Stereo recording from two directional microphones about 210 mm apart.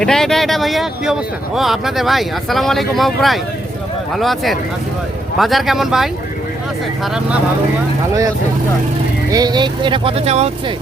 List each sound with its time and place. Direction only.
0.0 s speech: centre (ahead or behind)
9.3 s speech: 20° right (ahead or behind)